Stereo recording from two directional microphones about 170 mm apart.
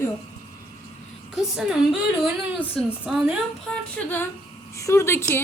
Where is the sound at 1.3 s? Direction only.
5° right (ahead or behind).